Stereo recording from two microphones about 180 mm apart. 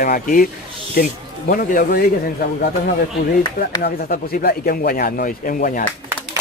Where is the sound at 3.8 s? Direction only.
60° left (ahead or behind).